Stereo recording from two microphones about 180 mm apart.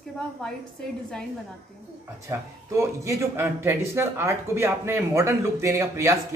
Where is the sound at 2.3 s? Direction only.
15° right (ahead or behind).